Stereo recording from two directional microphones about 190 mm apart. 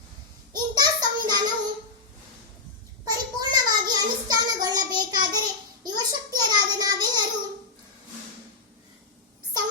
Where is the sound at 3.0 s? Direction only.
20° right (ahead or behind).